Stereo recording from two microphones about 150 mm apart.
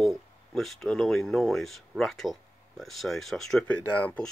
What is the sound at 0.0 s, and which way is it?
Speech, centre (ahead or behind).